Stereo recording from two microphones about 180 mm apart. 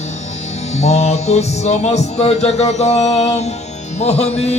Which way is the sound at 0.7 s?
40° left (ahead or behind).